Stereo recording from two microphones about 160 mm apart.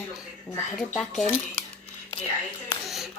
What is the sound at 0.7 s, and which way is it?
Speech, centre (ahead or behind).